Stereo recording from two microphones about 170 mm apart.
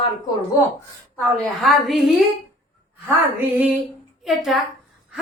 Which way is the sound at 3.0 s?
10° right (ahead or behind).